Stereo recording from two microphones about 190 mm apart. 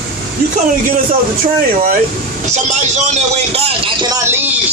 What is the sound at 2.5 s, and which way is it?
Speech, 40° right (ahead or behind).